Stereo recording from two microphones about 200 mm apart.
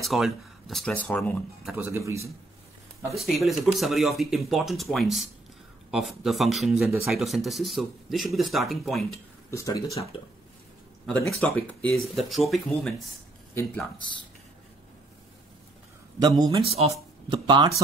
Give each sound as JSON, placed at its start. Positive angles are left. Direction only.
{"t": 0.0, "sound": "speech", "side_deg": 0}
{"t": 1.9, "sound": "a man's voice", "side_deg": -15}
{"t": 3.2, "sound": "speech", "side_deg": 0}
{"t": 9.5, "sound": "speech", "side_deg": 15}
{"t": 11.1, "sound": "speech", "side_deg": 0}
{"t": 16.2, "sound": "speech", "side_deg": -20}
{"t": 16.7, "sound": "speech", "side_deg": -30}